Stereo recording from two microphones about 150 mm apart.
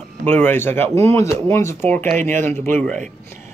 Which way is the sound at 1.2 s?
15° left (ahead or behind).